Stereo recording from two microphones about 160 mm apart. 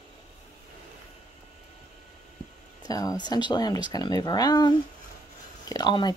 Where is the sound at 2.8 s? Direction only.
25° left (ahead or behind).